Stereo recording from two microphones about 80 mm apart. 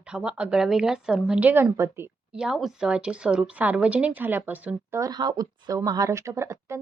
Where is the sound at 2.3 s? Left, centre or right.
Centre; by 4.7 s right.